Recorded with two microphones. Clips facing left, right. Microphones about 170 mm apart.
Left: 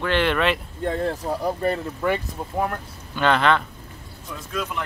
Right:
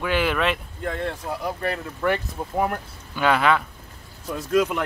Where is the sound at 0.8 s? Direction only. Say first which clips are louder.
Left 4 dB; 35° left (ahead or behind).